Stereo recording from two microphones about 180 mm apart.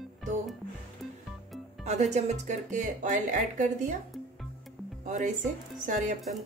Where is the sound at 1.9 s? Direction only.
40° right (ahead or behind).